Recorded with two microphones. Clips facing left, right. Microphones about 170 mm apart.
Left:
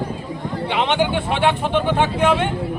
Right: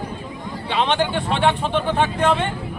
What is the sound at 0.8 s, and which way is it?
Speech, 15° left (ahead or behind).